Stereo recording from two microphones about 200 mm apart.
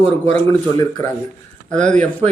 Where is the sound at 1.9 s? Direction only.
5° left (ahead or behind).